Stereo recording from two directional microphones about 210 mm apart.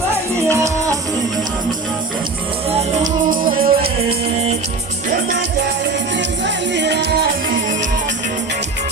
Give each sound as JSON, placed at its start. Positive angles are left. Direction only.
{"t": 2.7, "sound": "music", "side_deg": -35}
{"t": 6.1, "sound": "music", "side_deg": -55}